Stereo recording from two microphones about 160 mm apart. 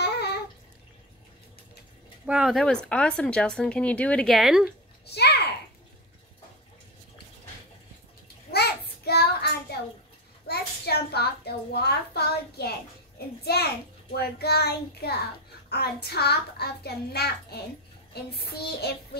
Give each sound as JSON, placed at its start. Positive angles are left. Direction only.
{"t": 0.0, "sound": "water", "side_deg": 90}
{"t": 2.2, "sound": "speech", "side_deg": -5}
{"t": 5.0, "sound": "a sound", "side_deg": 90}
{"t": 8.5, "sound": "child singing", "side_deg": 90}
{"t": 10.4, "sound": "a child's voice", "side_deg": 80}